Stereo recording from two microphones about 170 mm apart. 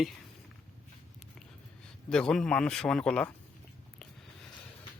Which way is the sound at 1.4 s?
5° left (ahead or behind).